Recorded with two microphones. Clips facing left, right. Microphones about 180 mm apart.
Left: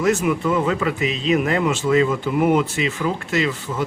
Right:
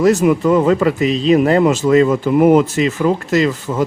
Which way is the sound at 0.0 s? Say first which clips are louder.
Right 7 dB; 35° right (ahead or behind).